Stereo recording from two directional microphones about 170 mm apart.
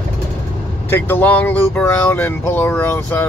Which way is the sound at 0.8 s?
10° left (ahead or behind).